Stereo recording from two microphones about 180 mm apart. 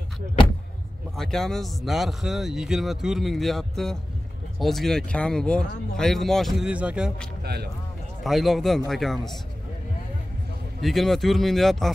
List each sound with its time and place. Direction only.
1.1 s speech: centre (ahead or behind)
7.4 s speech: 60° right (ahead or behind)
8.2 s speech: centre (ahead or behind)
10.8 s speech: centre (ahead or behind)